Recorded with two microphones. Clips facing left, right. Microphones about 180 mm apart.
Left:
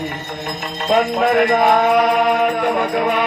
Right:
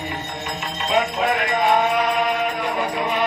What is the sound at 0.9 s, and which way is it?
Jingle bell, 45° left (ahead or behind).